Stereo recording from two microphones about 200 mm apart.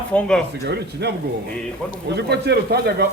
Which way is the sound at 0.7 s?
55° right (ahead or behind).